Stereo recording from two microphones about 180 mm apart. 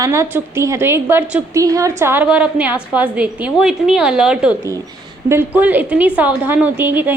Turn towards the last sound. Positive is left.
turn(degrees=-10)  # may be behind; listen again after turning